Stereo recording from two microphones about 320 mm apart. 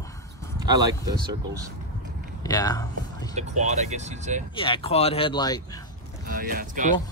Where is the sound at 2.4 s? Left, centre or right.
Centre.